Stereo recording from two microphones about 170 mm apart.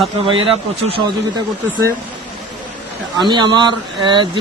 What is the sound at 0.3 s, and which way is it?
Speech, 30° right (ahead or behind).